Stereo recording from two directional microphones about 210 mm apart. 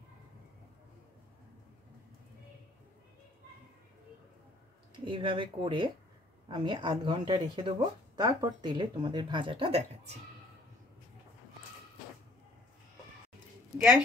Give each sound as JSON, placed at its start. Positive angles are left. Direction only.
{"t": 4.9, "sound": "speech", "side_deg": -25}